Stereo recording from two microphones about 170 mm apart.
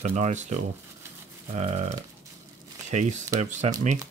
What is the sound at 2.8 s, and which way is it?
Speech, 45° right (ahead or behind).